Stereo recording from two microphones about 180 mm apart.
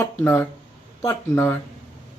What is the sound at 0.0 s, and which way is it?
Speech, 15° left (ahead or behind).